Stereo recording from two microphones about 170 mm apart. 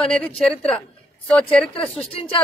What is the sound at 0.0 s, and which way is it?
Speech, 5° left (ahead or behind).